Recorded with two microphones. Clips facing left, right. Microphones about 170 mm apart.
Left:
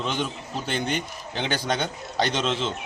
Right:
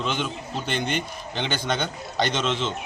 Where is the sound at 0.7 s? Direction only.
5° left (ahead or behind).